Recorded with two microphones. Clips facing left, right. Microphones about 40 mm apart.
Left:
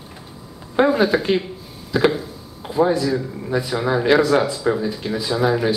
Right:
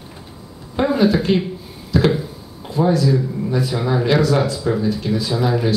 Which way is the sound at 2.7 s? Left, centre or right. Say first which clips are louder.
Right 1 dB; centre.